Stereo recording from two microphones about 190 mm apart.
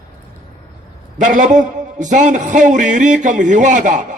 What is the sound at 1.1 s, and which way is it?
A man's voice, 40° right (ahead or behind).